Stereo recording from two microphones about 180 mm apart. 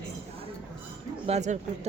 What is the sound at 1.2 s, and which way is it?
Speech, 40° right (ahead or behind).